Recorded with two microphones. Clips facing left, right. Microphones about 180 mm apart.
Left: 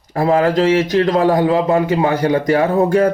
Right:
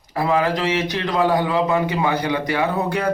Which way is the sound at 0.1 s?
45° left (ahead or behind).